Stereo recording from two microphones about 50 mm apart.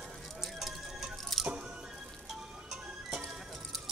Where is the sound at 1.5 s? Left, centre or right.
Centre.